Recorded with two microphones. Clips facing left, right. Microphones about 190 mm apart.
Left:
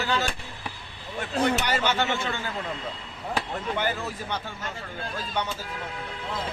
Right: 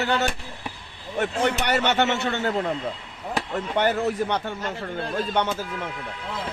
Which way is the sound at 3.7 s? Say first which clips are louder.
Right 8 dB; 60° right (ahead or behind).